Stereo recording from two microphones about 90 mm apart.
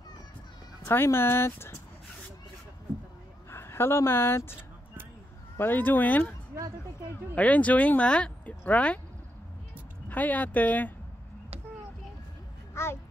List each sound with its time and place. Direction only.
0.8 s speech: 25° left (ahead or behind)
3.4 s a woman's voice: 30° left (ahead or behind)
7.3 s speech: 15° left (ahead or behind)
10.0 s speech: 20° left (ahead or behind)
12.8 s a sound: 30° left (ahead or behind)